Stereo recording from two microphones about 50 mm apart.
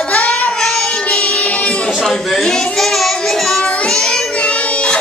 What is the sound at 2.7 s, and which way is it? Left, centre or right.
Child singing, centre.